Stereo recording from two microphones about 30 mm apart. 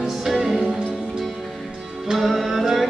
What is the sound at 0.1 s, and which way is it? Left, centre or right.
Music, centre.